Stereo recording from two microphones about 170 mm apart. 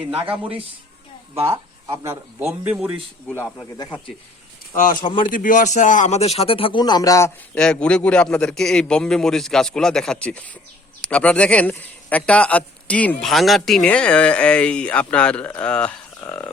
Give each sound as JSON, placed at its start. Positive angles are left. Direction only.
{"t": 2.0, "sound": "speech", "side_deg": -15}
{"t": 3.2, "sound": "speech", "side_deg": 15}
{"t": 4.7, "sound": "speech", "side_deg": 55}
{"t": 4.9, "sound": "speech", "side_deg": 25}
{"t": 5.3, "sound": "speech", "side_deg": 50}
{"t": 7.5, "sound": "a man's voice", "side_deg": 5}